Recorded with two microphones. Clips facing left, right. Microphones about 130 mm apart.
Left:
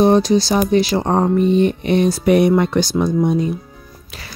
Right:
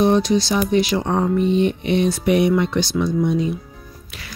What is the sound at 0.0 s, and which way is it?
Speech, 35° left (ahead or behind).